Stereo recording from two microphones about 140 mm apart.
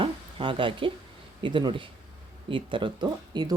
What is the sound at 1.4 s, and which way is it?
Speech, 35° right (ahead or behind).